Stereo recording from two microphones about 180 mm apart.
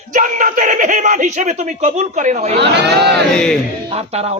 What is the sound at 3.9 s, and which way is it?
Speech, 35° right (ahead or behind).